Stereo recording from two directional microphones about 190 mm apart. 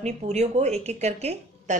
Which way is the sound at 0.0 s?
35° right (ahead or behind).